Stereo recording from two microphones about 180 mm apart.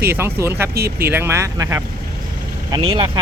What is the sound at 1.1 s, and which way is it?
Speech, 15° right (ahead or behind).